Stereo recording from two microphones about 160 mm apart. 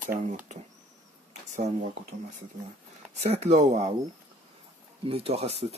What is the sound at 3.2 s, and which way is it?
Speech, 40° right (ahead or behind).